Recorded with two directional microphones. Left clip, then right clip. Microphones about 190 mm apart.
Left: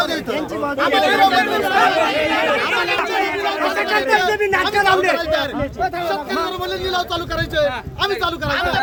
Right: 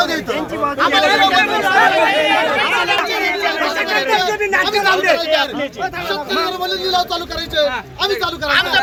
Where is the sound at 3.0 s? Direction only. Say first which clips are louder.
Right 2 dB; 30° left (ahead or behind).